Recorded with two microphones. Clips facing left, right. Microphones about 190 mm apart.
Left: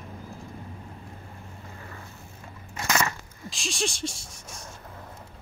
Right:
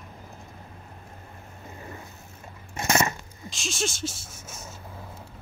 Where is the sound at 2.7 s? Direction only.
25° right (ahead or behind).